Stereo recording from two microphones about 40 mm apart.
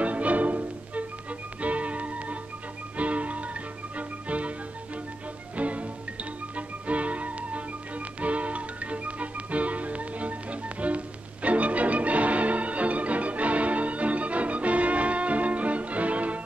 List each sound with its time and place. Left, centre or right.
0.0 s music: right
5.6 s music: right